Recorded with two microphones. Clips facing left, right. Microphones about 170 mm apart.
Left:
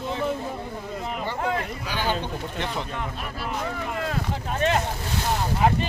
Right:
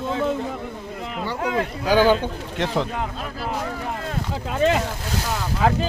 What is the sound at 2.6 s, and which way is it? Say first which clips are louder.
Speech: right 9 dB; 90° right.